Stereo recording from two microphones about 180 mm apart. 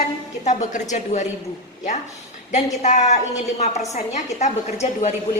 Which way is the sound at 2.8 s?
40° left (ahead or behind).